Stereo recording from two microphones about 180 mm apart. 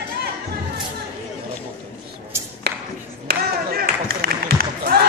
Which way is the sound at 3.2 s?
60° right (ahead or behind).